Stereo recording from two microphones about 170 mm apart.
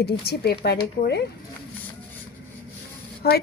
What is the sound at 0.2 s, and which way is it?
Speech, 70° left (ahead or behind).